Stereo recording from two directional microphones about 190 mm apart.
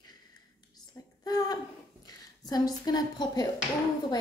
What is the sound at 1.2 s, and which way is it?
A woman's voice, 20° left (ahead or behind).